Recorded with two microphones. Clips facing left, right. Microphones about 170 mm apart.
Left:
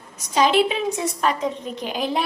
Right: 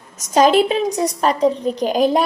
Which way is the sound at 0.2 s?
45° right (ahead or behind).